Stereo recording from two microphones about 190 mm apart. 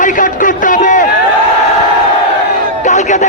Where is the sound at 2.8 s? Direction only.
40° left (ahead or behind).